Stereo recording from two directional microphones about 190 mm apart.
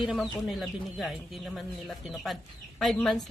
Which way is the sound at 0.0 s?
Centre (ahead or behind).